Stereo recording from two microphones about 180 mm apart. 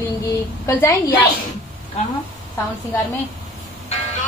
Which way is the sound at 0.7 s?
15° left (ahead or behind).